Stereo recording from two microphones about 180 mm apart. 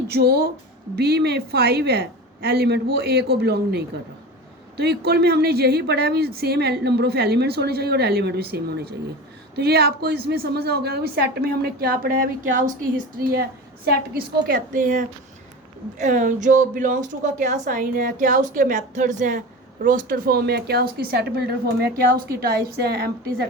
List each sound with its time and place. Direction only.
0.1 s a woman's voice: 60° right (ahead or behind)